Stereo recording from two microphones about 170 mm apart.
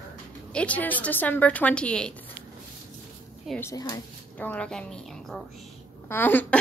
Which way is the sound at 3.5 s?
20° left (ahead or behind).